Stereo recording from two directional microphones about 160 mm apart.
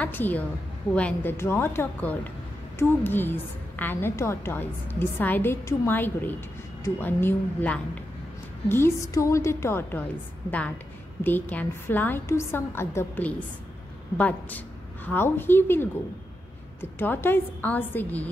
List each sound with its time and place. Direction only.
0.0 s a woman's voice: 10° left (ahead or behind)
11.5 s a woman's voice: 10° left (ahead or behind)
17.0 s a woman's voice: 10° left (ahead or behind)